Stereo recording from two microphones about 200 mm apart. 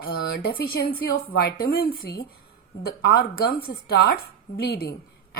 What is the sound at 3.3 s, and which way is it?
Speech, 50° left (ahead or behind).